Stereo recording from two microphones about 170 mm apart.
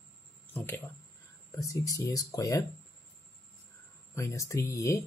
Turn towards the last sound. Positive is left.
turn(degrees=20)  # may be behind; listen again after turning